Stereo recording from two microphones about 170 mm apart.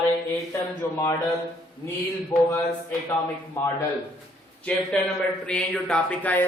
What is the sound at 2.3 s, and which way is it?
Mantra, 15° left (ahead or behind).